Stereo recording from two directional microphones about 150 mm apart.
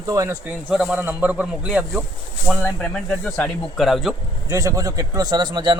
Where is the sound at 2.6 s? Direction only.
5° left (ahead or behind).